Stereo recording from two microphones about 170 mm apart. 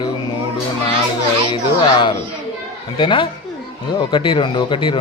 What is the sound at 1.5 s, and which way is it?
Speech, 25° left (ahead or behind).